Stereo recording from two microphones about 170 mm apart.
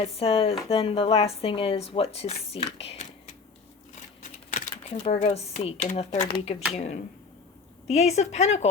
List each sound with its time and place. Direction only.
0.0 s speech: 35° left (ahead or behind)
4.2 s speech: 50° left (ahead or behind)